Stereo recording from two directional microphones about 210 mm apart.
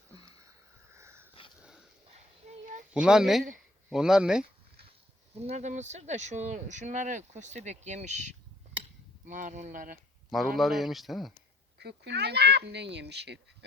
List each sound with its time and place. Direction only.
0.9 s sniff: 10° right (ahead or behind)
2.5 s a sound: 40° right (ahead or behind)
2.9 s speech: 5° right (ahead or behind)
5.3 s speech: 30° right (ahead or behind)
10.3 s speech: centre (ahead or behind)
11.8 s speech: 50° right (ahead or behind)